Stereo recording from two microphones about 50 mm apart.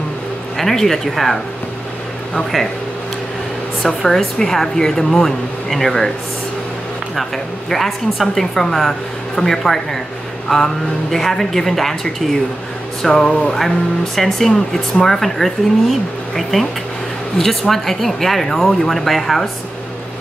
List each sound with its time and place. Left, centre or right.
0.6 s speech: centre
3.8 s speech: centre
7.7 s speech: centre